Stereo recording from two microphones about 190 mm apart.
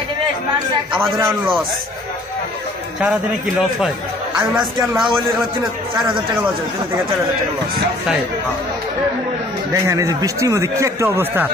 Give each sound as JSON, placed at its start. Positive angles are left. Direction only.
{"t": 1.2, "sound": "speech", "side_deg": -5}
{"t": 3.0, "sound": "a man's voice", "side_deg": -5}
{"t": 9.7, "sound": "speech", "side_deg": -15}